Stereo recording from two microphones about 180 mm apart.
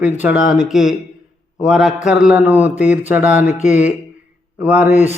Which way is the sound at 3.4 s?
40° left (ahead or behind).